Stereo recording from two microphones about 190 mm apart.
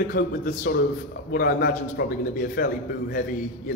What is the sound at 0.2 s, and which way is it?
A man's voice, 50° left (ahead or behind).